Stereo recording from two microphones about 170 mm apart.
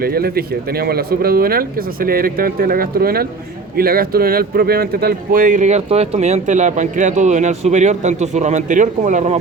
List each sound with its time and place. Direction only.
0.0 s speech: 65° right (ahead or behind); by 9.4 s 45° right (ahead or behind)